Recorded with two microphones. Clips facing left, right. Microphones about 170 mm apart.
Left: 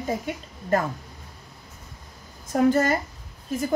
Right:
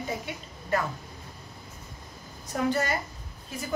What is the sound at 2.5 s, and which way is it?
Speech, 50° left (ahead or behind).